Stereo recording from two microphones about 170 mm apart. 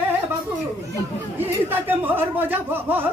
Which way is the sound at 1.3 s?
10° right (ahead or behind).